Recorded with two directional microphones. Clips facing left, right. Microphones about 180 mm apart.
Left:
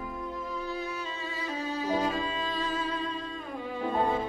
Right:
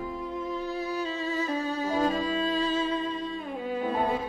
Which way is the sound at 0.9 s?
40° right (ahead or behind).